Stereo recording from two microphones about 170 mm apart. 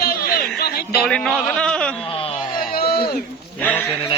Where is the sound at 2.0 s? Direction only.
35° left (ahead or behind).